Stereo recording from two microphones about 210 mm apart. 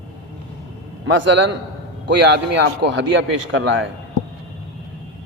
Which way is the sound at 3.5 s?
65° right (ahead or behind).